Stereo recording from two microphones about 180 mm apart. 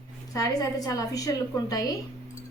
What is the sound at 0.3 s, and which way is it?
Speech, 20° left (ahead or behind).